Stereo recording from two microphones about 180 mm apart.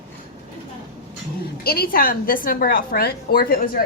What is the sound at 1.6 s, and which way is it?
A woman's voice, 60° left (ahead or behind).